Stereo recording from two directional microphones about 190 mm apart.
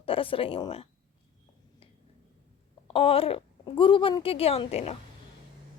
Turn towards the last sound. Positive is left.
turn(degrees=35)  # may be behind; listen again after turning